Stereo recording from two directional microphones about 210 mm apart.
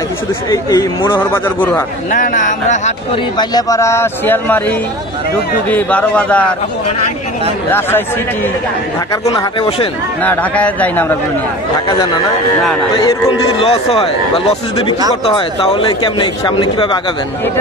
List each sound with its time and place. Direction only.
0.5 s speech: 15° left (ahead or behind)
2.1 s speech: 40° left (ahead or behind)
3.3 s speech: 15° left (ahead or behind)
9.1 s a man's voice: 15° left (ahead or behind)
10.2 s speech: 5° left (ahead or behind)
13.6 s a man's voice: 25° left (ahead or behind)